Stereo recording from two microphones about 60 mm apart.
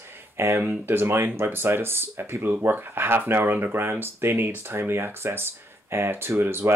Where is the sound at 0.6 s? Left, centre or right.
Right.